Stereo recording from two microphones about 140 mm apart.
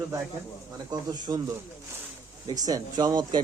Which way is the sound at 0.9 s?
30° right (ahead or behind).